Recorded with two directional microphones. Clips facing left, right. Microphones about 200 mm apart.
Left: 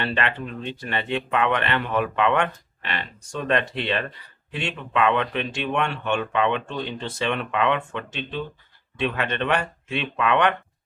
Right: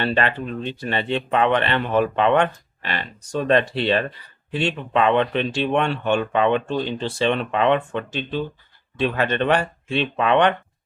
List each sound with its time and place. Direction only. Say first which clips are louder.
0.0 s speech: right 4 dB; 35° right (ahead or behind)